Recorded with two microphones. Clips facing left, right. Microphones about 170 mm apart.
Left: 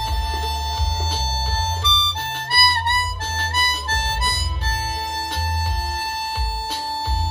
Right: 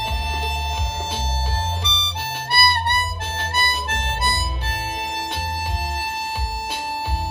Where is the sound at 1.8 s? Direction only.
15° right (ahead or behind).